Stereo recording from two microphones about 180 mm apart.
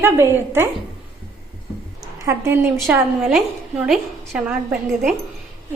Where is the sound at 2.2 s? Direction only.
15° right (ahead or behind).